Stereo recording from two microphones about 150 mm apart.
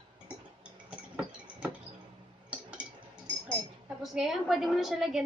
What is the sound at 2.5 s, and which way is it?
Cutlery, 10° right (ahead or behind).